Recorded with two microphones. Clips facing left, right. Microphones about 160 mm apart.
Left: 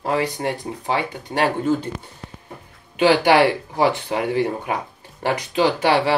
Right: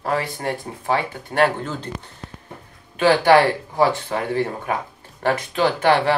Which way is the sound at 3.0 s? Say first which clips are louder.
Even; 15° left (ahead or behind).